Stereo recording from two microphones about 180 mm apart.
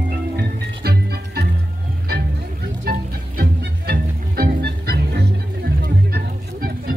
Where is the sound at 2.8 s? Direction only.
60° right (ahead or behind).